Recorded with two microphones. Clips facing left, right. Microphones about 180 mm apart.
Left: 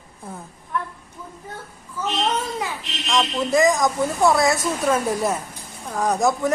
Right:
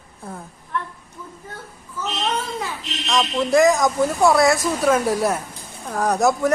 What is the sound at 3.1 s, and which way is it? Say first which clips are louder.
Speech: right 2 dB; centre (ahead or behind).